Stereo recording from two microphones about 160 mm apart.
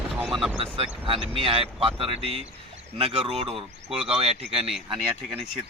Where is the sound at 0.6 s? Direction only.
35° right (ahead or behind).